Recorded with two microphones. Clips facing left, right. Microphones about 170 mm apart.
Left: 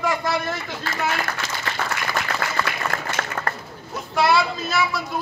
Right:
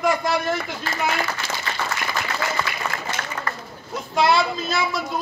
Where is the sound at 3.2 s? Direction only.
45° left (ahead or behind).